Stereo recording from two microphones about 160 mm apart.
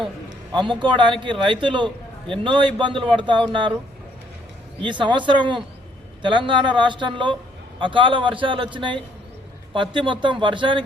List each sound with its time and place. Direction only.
0.5 s speech: 30° right (ahead or behind)
4.8 s a man's voice: 30° right (ahead or behind)